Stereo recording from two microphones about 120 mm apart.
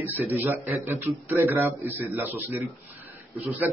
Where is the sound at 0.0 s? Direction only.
15° right (ahead or behind).